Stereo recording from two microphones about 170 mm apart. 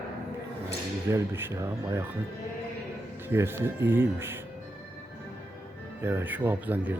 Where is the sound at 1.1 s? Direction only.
15° right (ahead or behind).